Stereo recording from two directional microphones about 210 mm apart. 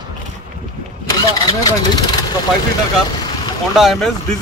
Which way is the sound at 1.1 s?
20° left (ahead or behind).